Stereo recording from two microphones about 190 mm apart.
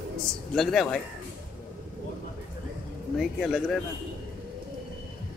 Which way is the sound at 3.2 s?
Centre (ahead or behind).